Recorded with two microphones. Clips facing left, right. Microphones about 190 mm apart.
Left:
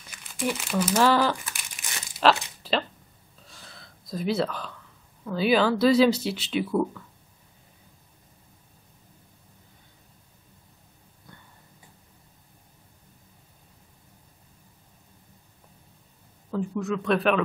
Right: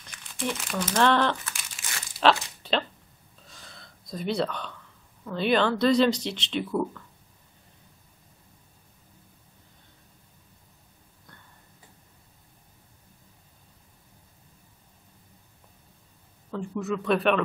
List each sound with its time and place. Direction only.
0.0 s crumpling: 10° left (ahead or behind)
2.1 s a sound: centre (ahead or behind)
5.2 s speech: 5° left (ahead or behind)
16.4 s speech: 5° left (ahead or behind)